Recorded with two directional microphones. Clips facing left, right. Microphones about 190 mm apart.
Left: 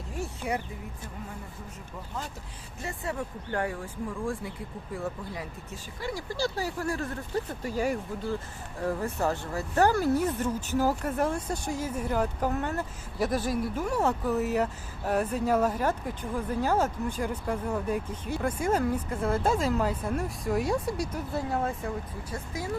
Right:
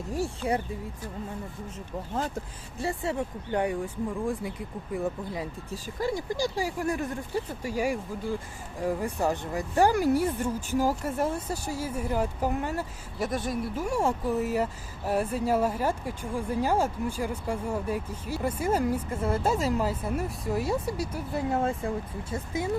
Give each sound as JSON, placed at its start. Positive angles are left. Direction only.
{"t": 0.1, "sound": "a sound", "side_deg": -35}
{"t": 2.8, "sound": "speech", "side_deg": -25}
{"t": 4.9, "sound": "speech", "side_deg": -20}
{"t": 5.7, "sound": "speech", "side_deg": -35}
{"t": 6.1, "sound": "speech", "side_deg": -15}
{"t": 13.8, "sound": "speech", "side_deg": -10}
{"t": 21.5, "sound": "speech", "side_deg": -25}